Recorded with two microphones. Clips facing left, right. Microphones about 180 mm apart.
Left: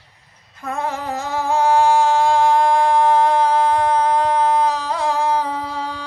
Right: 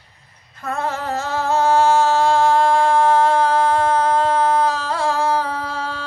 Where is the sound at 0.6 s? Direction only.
15° left (ahead or behind).